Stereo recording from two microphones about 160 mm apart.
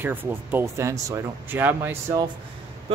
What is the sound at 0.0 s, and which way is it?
Speech, 10° right (ahead or behind).